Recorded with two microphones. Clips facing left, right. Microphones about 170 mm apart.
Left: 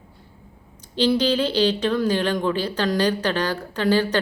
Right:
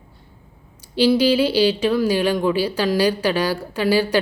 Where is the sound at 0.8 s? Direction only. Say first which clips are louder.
Right 4 dB; 10° right (ahead or behind).